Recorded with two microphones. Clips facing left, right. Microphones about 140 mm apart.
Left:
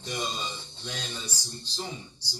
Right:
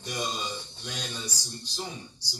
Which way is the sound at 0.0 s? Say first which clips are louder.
Even; 15° right (ahead or behind).